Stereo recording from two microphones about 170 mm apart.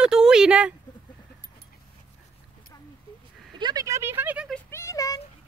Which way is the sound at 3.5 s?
25° right (ahead or behind).